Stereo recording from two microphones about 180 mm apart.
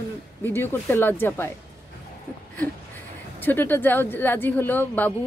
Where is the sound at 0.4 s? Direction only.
10° left (ahead or behind).